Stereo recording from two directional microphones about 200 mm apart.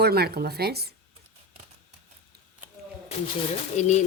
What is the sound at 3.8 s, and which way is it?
Speech, 35° left (ahead or behind).